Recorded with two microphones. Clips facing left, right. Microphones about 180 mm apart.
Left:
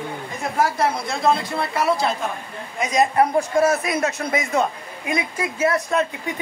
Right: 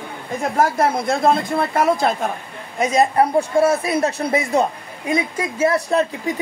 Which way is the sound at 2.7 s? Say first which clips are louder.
Right 2 dB; 30° right (ahead or behind).